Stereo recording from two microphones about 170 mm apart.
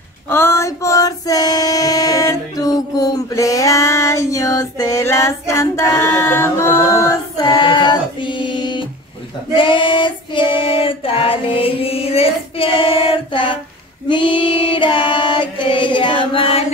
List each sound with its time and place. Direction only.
0.3 s female singing: 15° left (ahead or behind)
9.6 s child singing: 30° left (ahead or behind)
14.0 s female singing: 30° left (ahead or behind)